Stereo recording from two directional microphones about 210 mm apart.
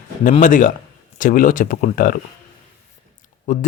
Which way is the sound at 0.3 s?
40° left (ahead or behind).